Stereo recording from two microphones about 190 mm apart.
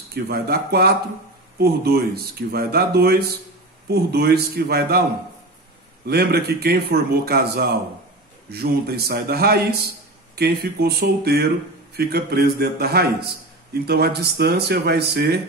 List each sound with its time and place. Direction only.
0.1 s speech: 55° right (ahead or behind)
6.0 s speech: 55° right (ahead or behind)